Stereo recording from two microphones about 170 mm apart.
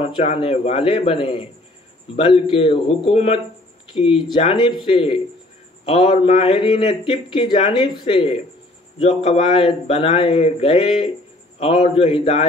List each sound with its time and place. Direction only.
0.0 s a man's voice: 40° left (ahead or behind)